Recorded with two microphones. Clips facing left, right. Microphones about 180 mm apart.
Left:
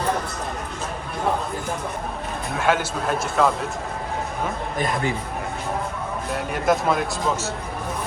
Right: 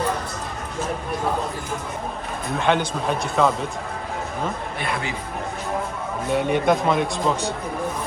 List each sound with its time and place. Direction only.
2.6 s speech: 5° left (ahead or behind)
4.8 s a man's voice: 40° left (ahead or behind)
6.3 s speech: centre (ahead or behind)